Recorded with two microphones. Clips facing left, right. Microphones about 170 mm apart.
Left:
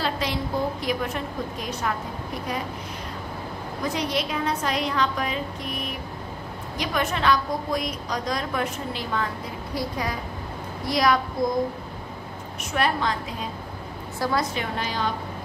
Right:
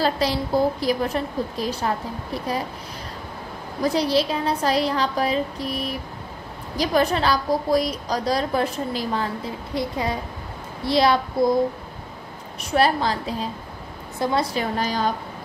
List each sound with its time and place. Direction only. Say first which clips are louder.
0.0 s a woman's voice: right 5 dB; 35° right (ahead or behind)
3.8 s a woman's voice: right 7 dB; 35° right (ahead or behind)
12.7 s a woman's voice: right 4 dB; 35° right (ahead or behind)